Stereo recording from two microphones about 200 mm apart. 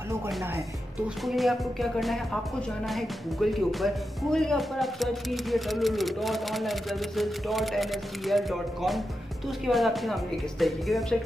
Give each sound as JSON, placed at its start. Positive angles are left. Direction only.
{"t": 1.0, "sound": "speech", "side_deg": 0}